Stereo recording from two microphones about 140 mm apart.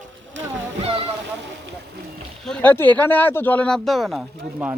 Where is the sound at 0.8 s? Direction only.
40° right (ahead or behind).